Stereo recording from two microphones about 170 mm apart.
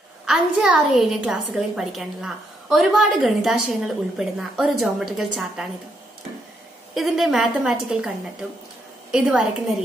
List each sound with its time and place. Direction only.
0.2 s a woman's voice: 5° right (ahead or behind)
6.9 s a woman's voice: centre (ahead or behind)